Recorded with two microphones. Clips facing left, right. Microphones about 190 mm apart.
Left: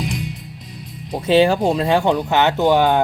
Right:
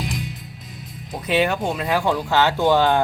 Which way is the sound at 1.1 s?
30° left (ahead or behind).